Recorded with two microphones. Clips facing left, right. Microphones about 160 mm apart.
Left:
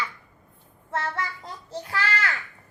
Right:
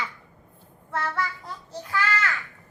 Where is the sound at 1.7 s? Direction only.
30° left (ahead or behind).